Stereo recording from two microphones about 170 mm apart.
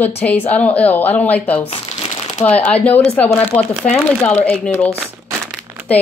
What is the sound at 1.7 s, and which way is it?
Crumpling, 40° left (ahead or behind).